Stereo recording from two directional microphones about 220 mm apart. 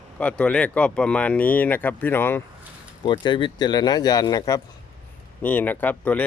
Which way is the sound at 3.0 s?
20° left (ahead or behind).